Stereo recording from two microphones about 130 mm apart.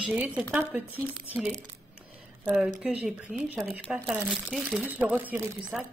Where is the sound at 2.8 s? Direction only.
10° right (ahead or behind).